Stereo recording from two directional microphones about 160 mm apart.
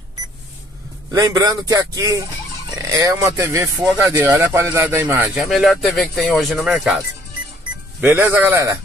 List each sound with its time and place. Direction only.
1.1 s speech: 20° right (ahead or behind)
5.4 s speech: 5° right (ahead or behind)
8.0 s speech: 15° right (ahead or behind)